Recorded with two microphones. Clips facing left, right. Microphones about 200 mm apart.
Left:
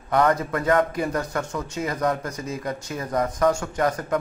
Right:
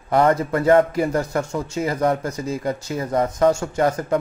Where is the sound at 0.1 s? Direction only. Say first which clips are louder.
Right 3 dB; 30° right (ahead or behind).